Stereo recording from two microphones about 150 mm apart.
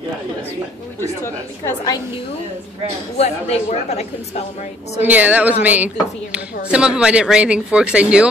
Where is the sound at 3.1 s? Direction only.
45° left (ahead or behind).